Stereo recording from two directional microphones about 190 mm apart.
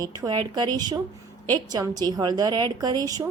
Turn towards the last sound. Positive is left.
turn(degrees=-20)  # may be behind; listen again after turning